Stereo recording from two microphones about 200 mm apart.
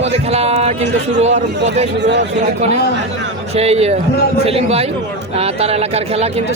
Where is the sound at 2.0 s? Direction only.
60° right (ahead or behind).